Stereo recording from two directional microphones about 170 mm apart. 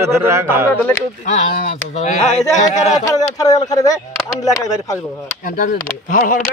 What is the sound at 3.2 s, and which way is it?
Speech, 20° left (ahead or behind).